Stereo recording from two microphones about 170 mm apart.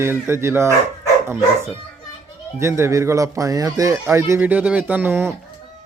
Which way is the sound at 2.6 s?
15° right (ahead or behind).